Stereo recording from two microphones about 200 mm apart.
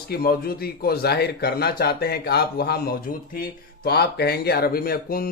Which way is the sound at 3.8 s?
55° left (ahead or behind).